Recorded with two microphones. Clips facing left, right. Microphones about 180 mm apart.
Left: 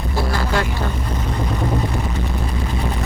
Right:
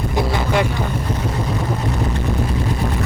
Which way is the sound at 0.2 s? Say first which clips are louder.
Right 2 dB; 20° right (ahead or behind).